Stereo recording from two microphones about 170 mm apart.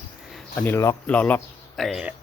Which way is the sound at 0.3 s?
Centre (ahead or behind).